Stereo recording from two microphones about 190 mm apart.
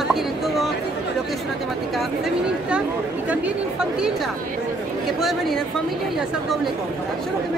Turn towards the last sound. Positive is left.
turn(degrees=0)  # may be behind; listen again after turning